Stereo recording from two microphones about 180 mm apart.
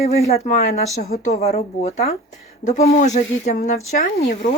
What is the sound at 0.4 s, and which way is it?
Speech, 40° left (ahead or behind).